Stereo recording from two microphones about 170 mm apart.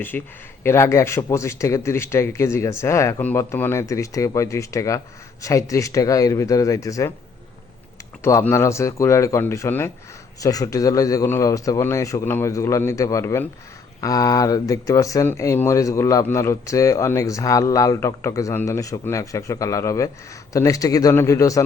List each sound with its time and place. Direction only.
0.1 s speech: 10° left (ahead or behind)
8.2 s speech: 15° left (ahead or behind)